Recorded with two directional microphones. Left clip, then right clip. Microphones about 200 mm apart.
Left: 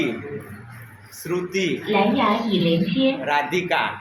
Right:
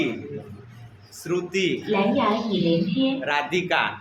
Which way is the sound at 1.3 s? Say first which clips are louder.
Even; centre (ahead or behind).